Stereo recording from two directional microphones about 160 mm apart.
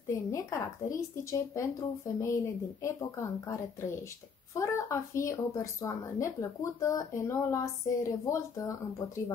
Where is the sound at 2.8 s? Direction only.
20° left (ahead or behind).